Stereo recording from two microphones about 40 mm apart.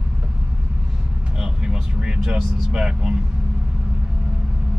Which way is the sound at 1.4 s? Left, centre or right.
Centre.